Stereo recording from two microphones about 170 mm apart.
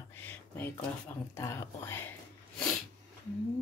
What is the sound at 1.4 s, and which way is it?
Speech, 15° left (ahead or behind).